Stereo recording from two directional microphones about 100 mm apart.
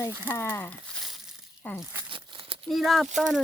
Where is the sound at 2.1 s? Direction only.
60° right (ahead or behind).